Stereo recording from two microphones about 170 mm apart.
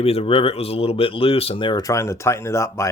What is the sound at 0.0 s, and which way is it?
Speech, 35° left (ahead or behind).